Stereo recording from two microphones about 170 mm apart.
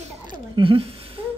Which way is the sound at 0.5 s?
30° right (ahead or behind).